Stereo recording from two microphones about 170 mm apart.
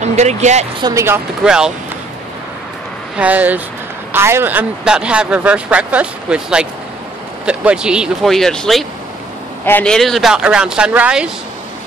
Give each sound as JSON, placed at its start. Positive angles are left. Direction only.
{"t": 0.0, "sound": "speech", "side_deg": -40}
{"t": 0.7, "sound": "speech", "side_deg": -25}
{"t": 1.0, "sound": "speech", "side_deg": -10}
{"t": 3.2, "sound": "speech", "side_deg": -10}